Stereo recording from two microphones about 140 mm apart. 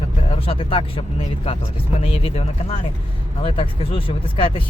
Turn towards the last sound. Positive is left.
turn(degrees=40)  # may be behind; listen again after turning